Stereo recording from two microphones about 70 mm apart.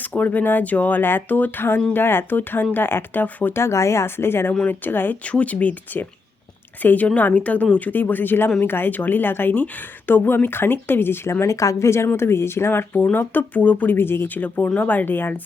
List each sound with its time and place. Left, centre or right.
0.0 s speech: left
3.6 s speech: left
13.1 s speech: left